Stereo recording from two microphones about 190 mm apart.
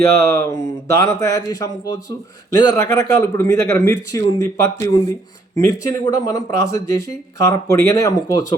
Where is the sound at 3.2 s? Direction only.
15° left (ahead or behind).